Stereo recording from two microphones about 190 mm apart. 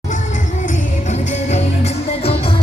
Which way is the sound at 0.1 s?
40° left (ahead or behind).